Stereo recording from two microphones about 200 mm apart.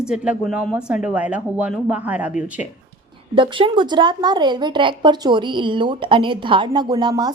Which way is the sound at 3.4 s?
25° right (ahead or behind).